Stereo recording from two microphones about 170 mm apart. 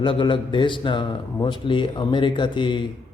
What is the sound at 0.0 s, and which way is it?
Speech, 30° left (ahead or behind).